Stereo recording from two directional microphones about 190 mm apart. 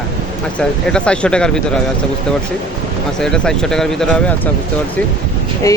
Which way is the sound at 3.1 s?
5° left (ahead or behind).